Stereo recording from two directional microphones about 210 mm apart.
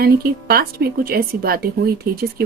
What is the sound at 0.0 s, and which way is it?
Speech, 45° right (ahead or behind).